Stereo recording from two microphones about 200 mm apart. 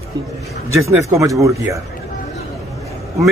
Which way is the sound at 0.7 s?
15° right (ahead or behind).